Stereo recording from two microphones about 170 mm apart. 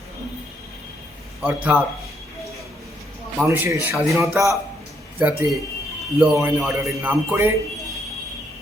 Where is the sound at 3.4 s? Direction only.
10° right (ahead or behind).